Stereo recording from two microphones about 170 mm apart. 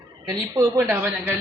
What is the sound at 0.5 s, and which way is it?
Speech, 20° right (ahead or behind).